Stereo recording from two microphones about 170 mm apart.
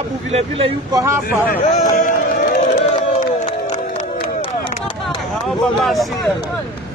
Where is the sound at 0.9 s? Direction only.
15° right (ahead or behind).